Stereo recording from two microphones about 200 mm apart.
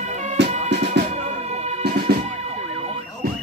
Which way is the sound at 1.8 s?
55° right (ahead or behind).